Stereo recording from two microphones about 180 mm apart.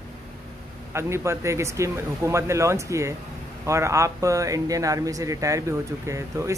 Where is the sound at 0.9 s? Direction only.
15° right (ahead or behind).